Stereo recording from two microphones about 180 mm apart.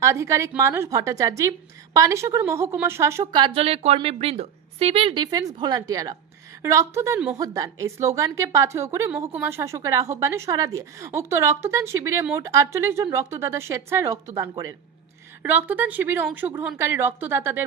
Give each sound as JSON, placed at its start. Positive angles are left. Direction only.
{"t": 0.0, "sound": "a woman's voice", "side_deg": -15}